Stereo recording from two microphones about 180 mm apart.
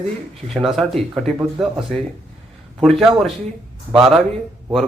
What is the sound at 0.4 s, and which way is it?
Speech, centre (ahead or behind).